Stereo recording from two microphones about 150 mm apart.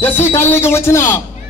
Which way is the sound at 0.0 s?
15° left (ahead or behind).